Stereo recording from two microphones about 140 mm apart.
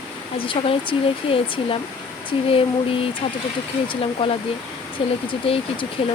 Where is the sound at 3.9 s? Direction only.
40° left (ahead or behind).